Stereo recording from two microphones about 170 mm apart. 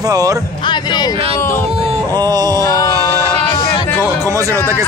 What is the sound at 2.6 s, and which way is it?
Speech, 20° left (ahead or behind).